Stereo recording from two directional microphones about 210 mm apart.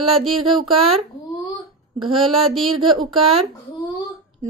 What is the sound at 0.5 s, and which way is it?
Speech, 25° right (ahead or behind).